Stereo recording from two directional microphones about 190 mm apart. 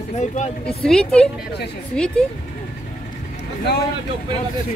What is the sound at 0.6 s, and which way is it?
Speech, 5° left (ahead or behind).